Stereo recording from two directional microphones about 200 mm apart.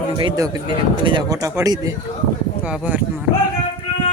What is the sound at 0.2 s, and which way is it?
Speech, 20° right (ahead or behind).